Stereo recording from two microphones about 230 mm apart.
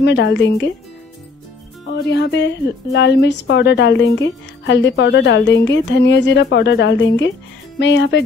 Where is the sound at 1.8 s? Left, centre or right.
Left.